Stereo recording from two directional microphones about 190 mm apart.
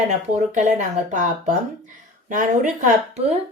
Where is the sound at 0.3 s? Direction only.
40° right (ahead or behind).